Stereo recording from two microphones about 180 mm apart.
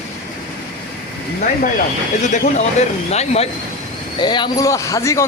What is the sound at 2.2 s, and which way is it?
Speech, 40° left (ahead or behind).